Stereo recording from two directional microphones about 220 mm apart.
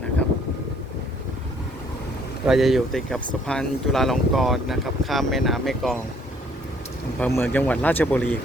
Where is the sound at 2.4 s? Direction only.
Centre (ahead or behind).